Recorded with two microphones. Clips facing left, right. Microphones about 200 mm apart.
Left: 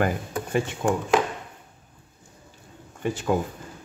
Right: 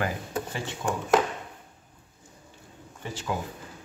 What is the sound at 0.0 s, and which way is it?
Speech, 55° left (ahead or behind).